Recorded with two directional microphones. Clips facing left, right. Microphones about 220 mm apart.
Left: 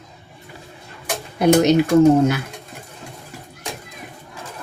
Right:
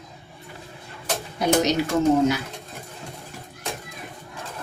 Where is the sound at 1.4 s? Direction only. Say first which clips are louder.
Left 7 dB; 55° left (ahead or behind).